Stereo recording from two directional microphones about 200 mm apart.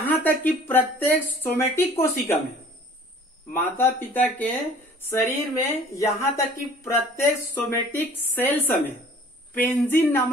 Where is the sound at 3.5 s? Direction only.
10° left (ahead or behind).